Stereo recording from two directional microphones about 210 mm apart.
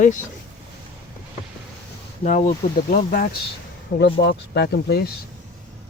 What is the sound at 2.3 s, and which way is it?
Speech, 35° left (ahead or behind).